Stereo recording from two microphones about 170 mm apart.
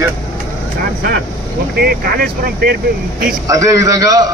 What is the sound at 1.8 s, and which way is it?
Speech, 65° right (ahead or behind).